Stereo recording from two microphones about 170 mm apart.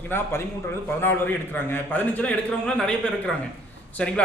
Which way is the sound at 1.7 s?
10° left (ahead or behind).